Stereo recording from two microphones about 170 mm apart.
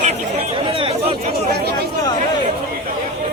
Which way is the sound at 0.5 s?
30° right (ahead or behind).